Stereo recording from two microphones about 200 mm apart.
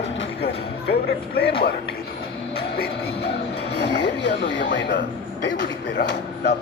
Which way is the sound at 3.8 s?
60° left (ahead or behind).